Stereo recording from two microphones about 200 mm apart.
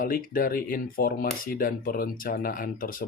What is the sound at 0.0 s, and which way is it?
Speech, 45° left (ahead or behind).